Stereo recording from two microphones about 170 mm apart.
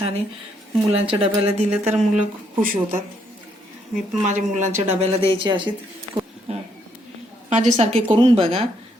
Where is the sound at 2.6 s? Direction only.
55° right (ahead or behind).